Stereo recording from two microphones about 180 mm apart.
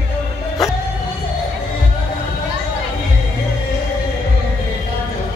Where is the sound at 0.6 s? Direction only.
Centre (ahead or behind).